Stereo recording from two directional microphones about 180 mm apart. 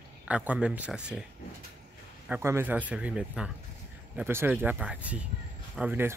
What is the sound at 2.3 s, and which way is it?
Speech, 15° right (ahead or behind).